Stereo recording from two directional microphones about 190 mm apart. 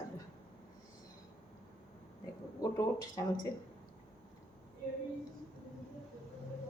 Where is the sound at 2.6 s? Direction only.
15° left (ahead or behind).